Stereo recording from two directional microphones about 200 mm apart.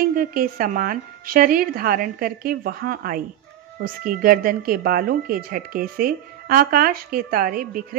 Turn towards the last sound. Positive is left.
turn(degrees=-45)  # may be behind; listen again after turning